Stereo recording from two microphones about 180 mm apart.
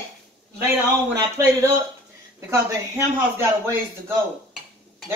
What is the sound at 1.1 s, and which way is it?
Speech, 15° right (ahead or behind).